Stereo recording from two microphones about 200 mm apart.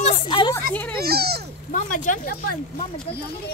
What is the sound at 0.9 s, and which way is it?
Speech, 50° right (ahead or behind).